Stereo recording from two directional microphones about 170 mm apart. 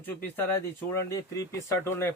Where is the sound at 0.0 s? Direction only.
10° left (ahead or behind).